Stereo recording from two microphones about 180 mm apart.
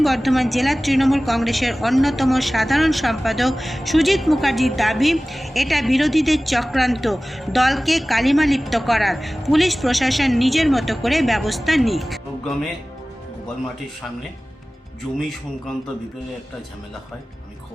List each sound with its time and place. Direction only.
0.0 s a woman's voice: centre (ahead or behind)
15.1 s a woman's voice: centre (ahead or behind)